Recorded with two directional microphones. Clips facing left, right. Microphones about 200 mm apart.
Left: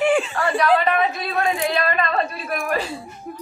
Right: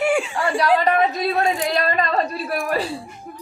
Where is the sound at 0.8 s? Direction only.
40° right (ahead or behind).